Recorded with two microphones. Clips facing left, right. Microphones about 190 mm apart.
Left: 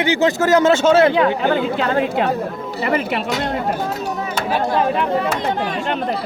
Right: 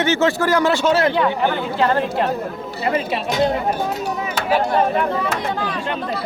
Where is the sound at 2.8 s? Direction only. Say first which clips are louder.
Left 1 dB; 75° left (ahead or behind).